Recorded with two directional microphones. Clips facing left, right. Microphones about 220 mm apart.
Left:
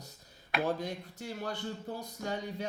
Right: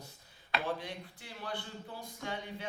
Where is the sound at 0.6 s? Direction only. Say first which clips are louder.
Left 9 dB; 40° left (ahead or behind).